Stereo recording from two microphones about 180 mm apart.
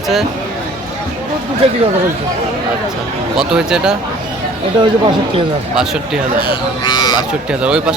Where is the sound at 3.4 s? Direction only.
5° right (ahead or behind).